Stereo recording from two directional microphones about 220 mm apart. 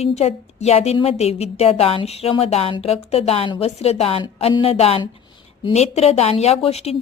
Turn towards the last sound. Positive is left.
turn(degrees=25)  # may be behind; listen again after turning